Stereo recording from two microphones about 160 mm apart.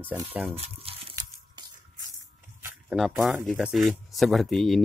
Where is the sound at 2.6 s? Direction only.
5° right (ahead or behind).